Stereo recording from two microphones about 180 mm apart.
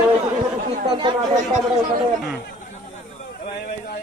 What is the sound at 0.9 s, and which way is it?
Speech, 25° right (ahead or behind).